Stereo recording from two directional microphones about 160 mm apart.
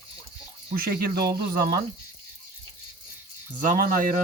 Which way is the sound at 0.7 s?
65° right (ahead or behind).